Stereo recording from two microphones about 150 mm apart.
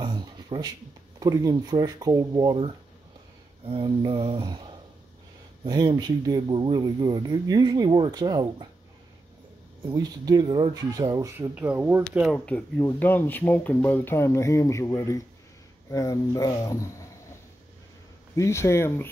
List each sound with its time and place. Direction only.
0.0 s a sound: 30° right (ahead or behind)
1.2 s speech: 25° right (ahead or behind)
3.6 s a sound: 35° right (ahead or behind)
5.6 s speech: 30° right (ahead or behind)
9.8 s speech: 25° right (ahead or behind); by 17.1 s 20° left (ahead or behind)
18.3 s speech: 20° left (ahead or behind)